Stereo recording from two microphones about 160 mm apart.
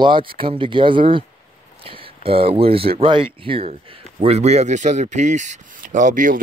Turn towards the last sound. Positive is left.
turn(degrees=-50)  # may be behind; listen again after turning